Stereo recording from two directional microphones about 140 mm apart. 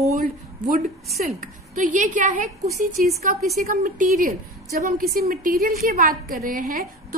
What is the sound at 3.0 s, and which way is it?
A woman's voice, 75° right (ahead or behind).